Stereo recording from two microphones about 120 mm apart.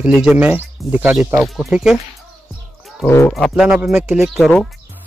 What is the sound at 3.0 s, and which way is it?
Speech, 20° left (ahead or behind).